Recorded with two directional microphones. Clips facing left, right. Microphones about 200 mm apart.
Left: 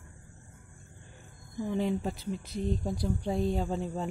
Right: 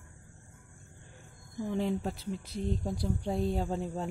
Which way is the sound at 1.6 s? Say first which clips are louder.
Left 1 dB; centre (ahead or behind).